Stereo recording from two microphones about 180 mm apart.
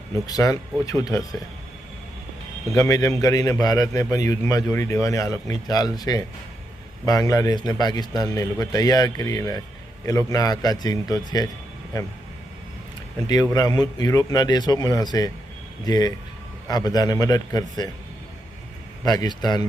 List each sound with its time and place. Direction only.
0.3 s a man's voice: 20° left (ahead or behind)
2.7 s a man's voice: 20° left (ahead or behind)
13.2 s a man's voice: 20° left (ahead or behind)
19.0 s a man's voice: 20° left (ahead or behind)